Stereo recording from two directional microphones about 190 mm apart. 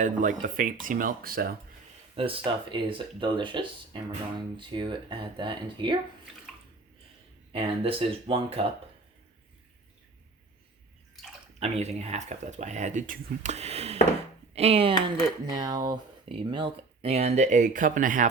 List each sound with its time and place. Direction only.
0.0 s speech: 45° right (ahead or behind)
2.1 s speech: 30° right (ahead or behind)
7.5 s speech: 30° right (ahead or behind)
11.6 s speech: 35° right (ahead or behind)